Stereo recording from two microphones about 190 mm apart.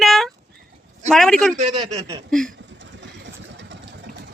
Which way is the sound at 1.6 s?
30° right (ahead or behind).